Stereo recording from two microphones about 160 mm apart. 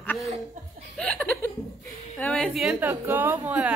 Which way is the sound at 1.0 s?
5° left (ahead or behind).